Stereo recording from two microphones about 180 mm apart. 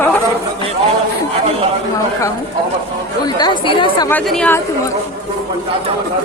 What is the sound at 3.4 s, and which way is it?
Speech, 25° left (ahead or behind).